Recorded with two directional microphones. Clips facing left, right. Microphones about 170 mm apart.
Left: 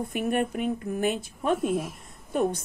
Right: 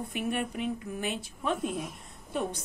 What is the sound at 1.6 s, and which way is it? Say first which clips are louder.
Speech: left 6 dB; centre (ahead or behind).